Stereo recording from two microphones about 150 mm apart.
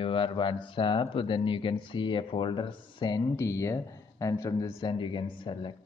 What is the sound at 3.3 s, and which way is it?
A man's voice, 20° left (ahead or behind).